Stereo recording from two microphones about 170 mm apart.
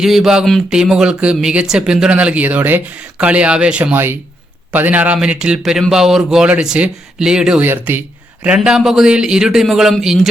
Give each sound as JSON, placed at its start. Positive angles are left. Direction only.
{"t": 0.0, "sound": "speech", "side_deg": 0}